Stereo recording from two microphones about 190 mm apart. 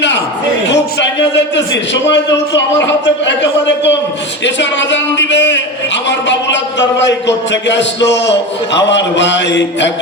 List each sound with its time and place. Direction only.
0.7 s a man's voice: 70° left (ahead or behind)